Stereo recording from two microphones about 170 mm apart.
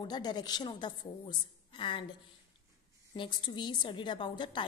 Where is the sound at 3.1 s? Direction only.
30° left (ahead or behind).